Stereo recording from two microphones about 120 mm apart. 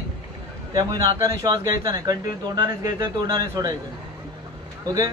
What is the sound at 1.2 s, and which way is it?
A man's voice, 30° right (ahead or behind).